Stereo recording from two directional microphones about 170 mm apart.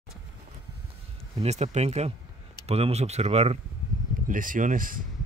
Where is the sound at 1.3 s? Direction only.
40° right (ahead or behind).